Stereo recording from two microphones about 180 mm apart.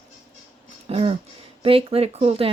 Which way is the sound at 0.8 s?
30° right (ahead or behind).